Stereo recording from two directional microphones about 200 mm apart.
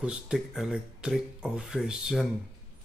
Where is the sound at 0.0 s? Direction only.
5° right (ahead or behind).